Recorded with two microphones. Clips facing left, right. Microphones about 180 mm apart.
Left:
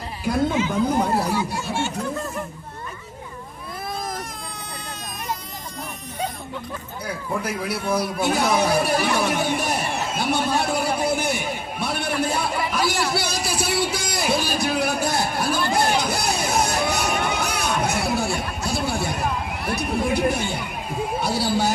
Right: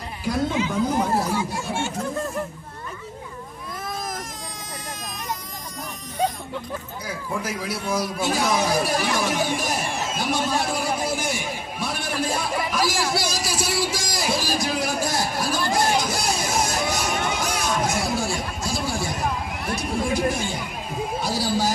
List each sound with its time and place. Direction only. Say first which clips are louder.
7.4 s a sound: left 2 dB; 60° left (ahead or behind)
19.7 s chatter: left 2 dB; 60° left (ahead or behind)
21.2 s a man's voice: left 2 dB; 65° left (ahead or behind)